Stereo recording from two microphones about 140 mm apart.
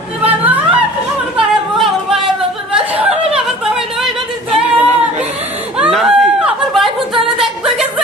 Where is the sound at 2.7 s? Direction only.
10° right (ahead or behind).